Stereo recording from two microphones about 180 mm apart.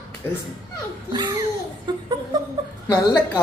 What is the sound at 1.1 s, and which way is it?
Speech, 25° right (ahead or behind).